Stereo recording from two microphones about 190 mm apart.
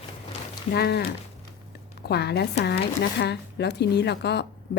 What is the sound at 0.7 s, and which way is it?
A woman's voice, 60° left (ahead or behind).